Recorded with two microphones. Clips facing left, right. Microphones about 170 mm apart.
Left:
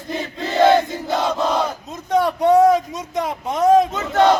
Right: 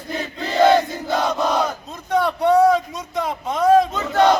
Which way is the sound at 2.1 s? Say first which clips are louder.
Left 2 dB; 15° left (ahead or behind).